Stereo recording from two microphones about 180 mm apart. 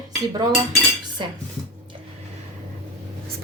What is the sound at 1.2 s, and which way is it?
Speech, 25° right (ahead or behind).